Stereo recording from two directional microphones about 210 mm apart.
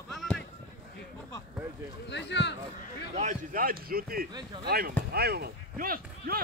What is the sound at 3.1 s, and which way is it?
A man's voice, 40° right (ahead or behind).